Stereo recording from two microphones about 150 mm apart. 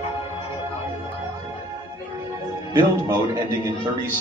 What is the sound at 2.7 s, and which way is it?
Speech, 25° right (ahead or behind).